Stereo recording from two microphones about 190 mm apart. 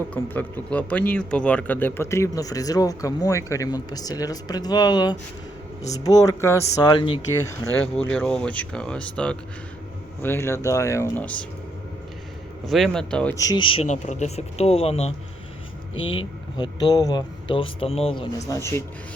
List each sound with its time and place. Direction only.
0.1 s a man's voice: 10° left (ahead or behind); by 7.2 s 25° left (ahead or behind)
7.9 s a man's voice: 5° left (ahead or behind)
12.6 s speech: centre (ahead or behind)
13.3 s speech: 20° left (ahead or behind)
13.8 s speech: 40° left (ahead or behind); by 18.8 s 15° left (ahead or behind)